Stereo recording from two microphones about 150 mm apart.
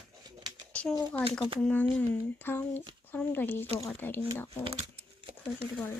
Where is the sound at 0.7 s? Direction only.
10° left (ahead or behind).